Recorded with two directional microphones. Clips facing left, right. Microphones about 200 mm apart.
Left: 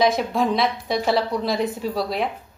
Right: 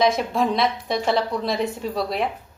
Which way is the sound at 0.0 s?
Centre (ahead or behind).